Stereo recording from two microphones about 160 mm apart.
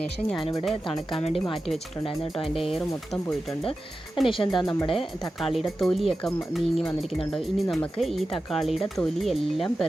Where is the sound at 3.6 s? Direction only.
35° left (ahead or behind).